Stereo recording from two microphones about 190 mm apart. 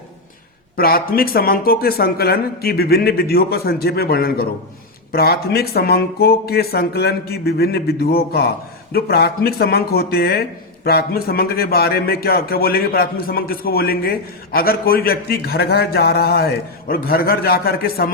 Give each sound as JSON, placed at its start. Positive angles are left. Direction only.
{"t": 0.8, "sound": "speech", "side_deg": 50}